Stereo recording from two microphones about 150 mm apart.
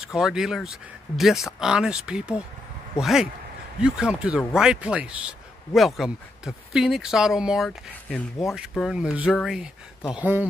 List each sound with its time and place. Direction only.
0.1 s speech: centre (ahead or behind)